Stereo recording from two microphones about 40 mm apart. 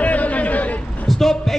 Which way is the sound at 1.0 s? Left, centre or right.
Centre.